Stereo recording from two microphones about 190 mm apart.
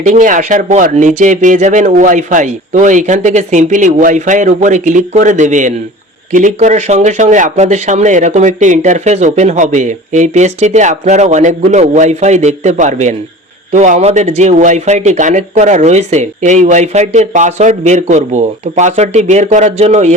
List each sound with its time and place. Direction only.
0.0 s speech: 45° right (ahead or behind)